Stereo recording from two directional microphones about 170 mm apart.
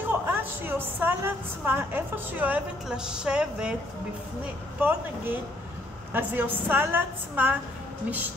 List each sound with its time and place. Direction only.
0.1 s a woman's voice: 10° right (ahead or behind)
4.7 s a woman's voice: 10° right (ahead or behind)